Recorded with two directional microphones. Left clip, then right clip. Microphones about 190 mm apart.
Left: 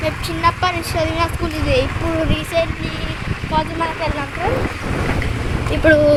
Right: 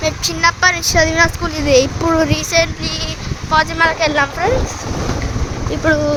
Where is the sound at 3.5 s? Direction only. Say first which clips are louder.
Right 7 dB; 35° right (ahead or behind).